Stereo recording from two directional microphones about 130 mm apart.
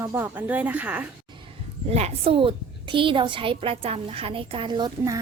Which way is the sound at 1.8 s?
55° right (ahead or behind).